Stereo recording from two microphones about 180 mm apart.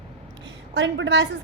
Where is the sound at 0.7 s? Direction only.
90° right.